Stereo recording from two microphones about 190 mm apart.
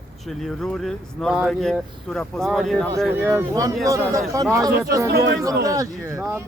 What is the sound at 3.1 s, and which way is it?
A man's voice, 10° right (ahead or behind).